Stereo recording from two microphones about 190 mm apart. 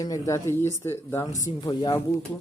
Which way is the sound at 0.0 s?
15° left (ahead or behind).